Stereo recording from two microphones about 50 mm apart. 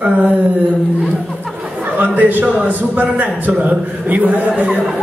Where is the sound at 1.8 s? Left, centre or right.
Right.